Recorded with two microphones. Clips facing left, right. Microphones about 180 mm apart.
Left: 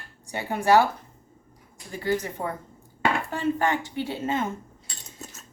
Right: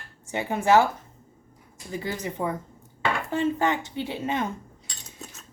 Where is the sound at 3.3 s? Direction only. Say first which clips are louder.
Right 1 dB; 20° right (ahead or behind).